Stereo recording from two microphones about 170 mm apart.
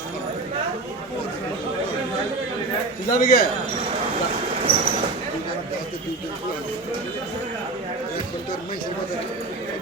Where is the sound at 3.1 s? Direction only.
60° left (ahead or behind).